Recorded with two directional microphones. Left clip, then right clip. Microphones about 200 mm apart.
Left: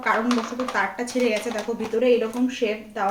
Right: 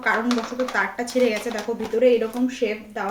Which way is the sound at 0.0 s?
Centre (ahead or behind).